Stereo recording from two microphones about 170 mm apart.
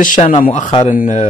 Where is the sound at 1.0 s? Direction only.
50° left (ahead or behind).